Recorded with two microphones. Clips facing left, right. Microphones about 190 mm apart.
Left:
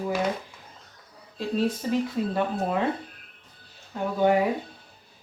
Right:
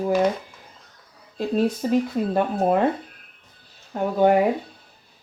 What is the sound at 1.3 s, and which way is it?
Speech, 50° right (ahead or behind).